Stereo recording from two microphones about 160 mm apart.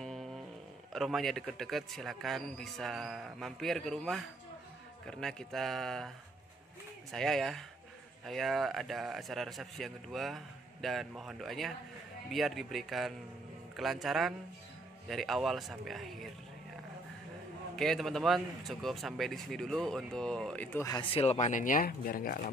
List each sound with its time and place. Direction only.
0.0 s a sound: centre (ahead or behind)
0.9 s a man's voice: centre (ahead or behind)
17.7 s a man's voice: centre (ahead or behind)
21.1 s speech: 40° left (ahead or behind); by 22.5 s 60° left (ahead or behind)